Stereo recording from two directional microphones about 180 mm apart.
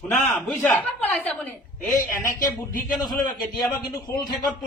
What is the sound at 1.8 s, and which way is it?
Speech, 15° left (ahead or behind).